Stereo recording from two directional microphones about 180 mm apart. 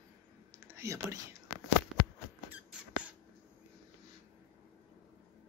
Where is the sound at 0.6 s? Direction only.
15° right (ahead or behind).